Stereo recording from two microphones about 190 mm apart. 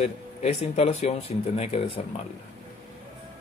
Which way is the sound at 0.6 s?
35° left (ahead or behind).